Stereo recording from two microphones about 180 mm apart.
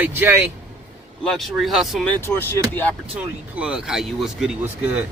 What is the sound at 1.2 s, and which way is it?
Speech, centre (ahead or behind).